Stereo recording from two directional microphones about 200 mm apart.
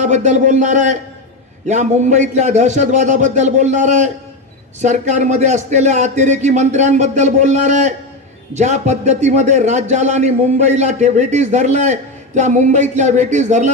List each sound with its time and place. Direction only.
0.0 s a man's voice: 35° right (ahead or behind)